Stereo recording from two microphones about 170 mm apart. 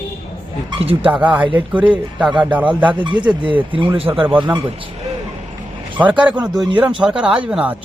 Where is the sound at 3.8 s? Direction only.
30° right (ahead or behind).